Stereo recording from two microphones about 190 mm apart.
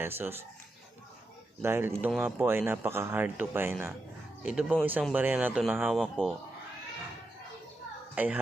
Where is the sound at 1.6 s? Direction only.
15° right (ahead or behind).